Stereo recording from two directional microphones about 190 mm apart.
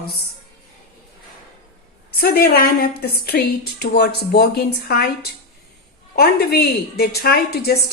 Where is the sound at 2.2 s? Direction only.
50° left (ahead or behind).